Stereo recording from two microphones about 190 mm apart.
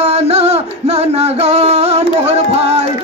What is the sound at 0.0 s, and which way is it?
Music, 35° right (ahead or behind).